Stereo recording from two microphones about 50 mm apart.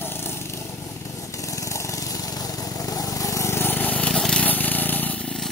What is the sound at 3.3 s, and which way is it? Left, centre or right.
Vehicle, left.